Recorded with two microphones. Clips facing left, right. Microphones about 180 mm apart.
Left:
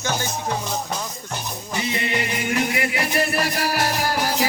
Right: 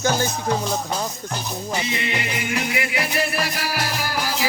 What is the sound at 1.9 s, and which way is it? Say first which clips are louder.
Music: left 1 dB; 45° left (ahead or behind).